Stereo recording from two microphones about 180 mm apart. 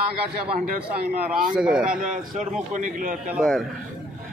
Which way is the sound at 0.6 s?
60° right (ahead or behind).